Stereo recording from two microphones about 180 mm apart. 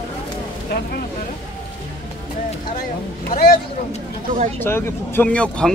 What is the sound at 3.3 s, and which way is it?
Speech, 50° left (ahead or behind).